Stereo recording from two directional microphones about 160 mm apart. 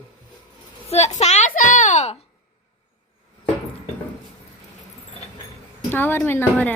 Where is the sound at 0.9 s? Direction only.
45° left (ahead or behind).